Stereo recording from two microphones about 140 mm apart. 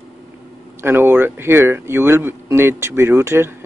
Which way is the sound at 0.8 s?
15° right (ahead or behind).